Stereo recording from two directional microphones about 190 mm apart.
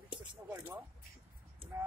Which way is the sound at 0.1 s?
25° right (ahead or behind).